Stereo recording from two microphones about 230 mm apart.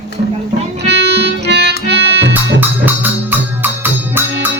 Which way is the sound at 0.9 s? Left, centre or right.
Right.